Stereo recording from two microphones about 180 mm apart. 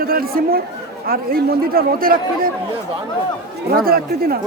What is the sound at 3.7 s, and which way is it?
Speech, 55° right (ahead or behind).